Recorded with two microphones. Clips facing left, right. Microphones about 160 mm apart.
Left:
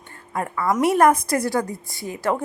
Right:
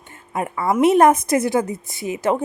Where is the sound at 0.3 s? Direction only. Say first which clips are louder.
Right 2 dB; 20° right (ahead or behind).